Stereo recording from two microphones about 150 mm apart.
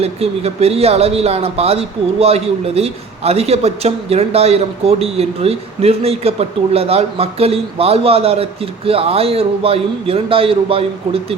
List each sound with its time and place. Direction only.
0.0 s speech: 45° right (ahead or behind)